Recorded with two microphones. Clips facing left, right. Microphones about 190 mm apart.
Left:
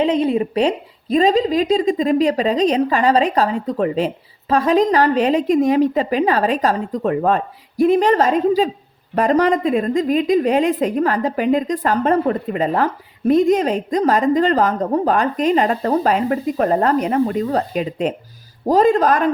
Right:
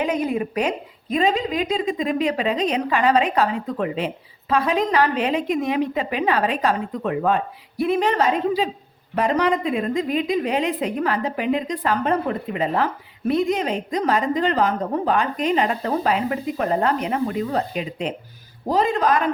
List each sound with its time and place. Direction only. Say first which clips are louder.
0.0 s a woman's voice: left 6 dB; 30° left (ahead or behind)